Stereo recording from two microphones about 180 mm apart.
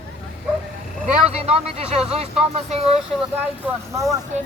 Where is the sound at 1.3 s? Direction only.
35° right (ahead or behind).